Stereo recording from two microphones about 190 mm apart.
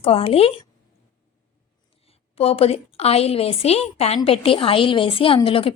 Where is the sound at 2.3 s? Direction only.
30° left (ahead or behind).